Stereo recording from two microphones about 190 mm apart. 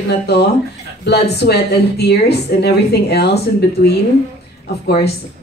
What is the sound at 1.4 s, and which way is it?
A woman's voice, 60° left (ahead or behind).